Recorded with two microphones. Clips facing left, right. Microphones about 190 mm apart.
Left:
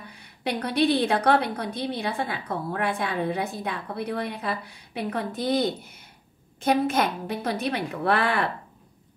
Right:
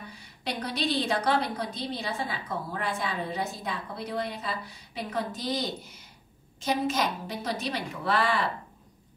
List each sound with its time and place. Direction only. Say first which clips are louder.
0.1 s a woman's voice: left 7 dB; 60° left (ahead or behind)